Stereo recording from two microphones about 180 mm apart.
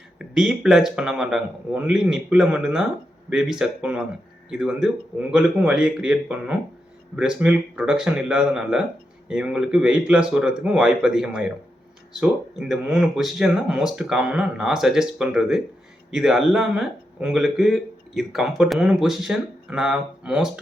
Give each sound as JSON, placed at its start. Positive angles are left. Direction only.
{"t": 0.2, "sound": "speech", "side_deg": -5}